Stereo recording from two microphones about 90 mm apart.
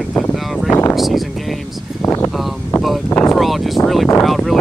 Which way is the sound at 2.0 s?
30° left (ahead or behind).